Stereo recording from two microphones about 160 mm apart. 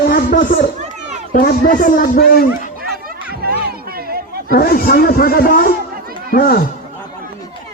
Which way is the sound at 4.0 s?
70° right (ahead or behind).